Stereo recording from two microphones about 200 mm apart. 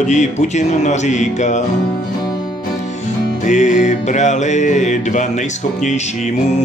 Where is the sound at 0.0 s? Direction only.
35° left (ahead or behind).